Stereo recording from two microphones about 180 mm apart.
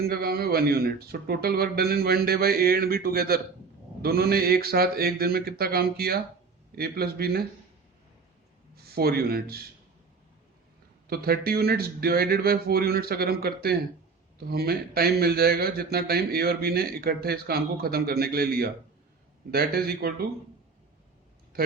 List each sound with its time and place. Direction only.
0.0 s speech: 60° right (ahead or behind)
8.7 s speech: 60° right (ahead or behind)
11.1 s speech: 55° right (ahead or behind)